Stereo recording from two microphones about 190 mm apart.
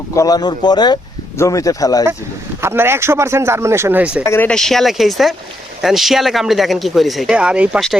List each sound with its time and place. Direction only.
0.1 s speech: 20° left (ahead or behind)
2.6 s speech: 10° right (ahead or behind)
4.3 s speech: 10° left (ahead or behind)